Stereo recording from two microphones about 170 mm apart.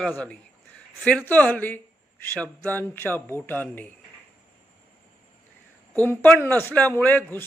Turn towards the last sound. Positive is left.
turn(degrees=10)  # may be behind; listen again after turning